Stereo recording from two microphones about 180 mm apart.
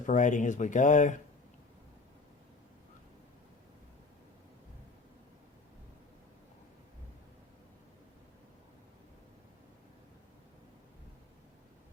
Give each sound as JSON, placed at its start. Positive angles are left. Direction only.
{"t": 0.0, "sound": "speech", "side_deg": 45}